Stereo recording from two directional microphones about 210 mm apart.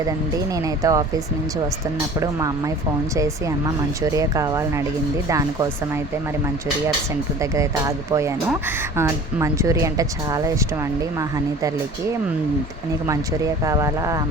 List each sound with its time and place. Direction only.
0.3 s speech: 15° right (ahead or behind)
2.1 s speech: 15° right (ahead or behind)
7.5 s speech: 15° right (ahead or behind)
13.1 s speech: 15° right (ahead or behind)